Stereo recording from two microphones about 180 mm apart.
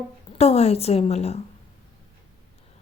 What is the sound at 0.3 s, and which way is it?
A woman's voice, 35° left (ahead or behind).